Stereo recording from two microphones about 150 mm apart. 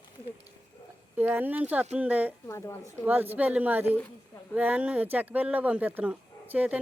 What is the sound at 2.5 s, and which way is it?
Speech, 20° left (ahead or behind).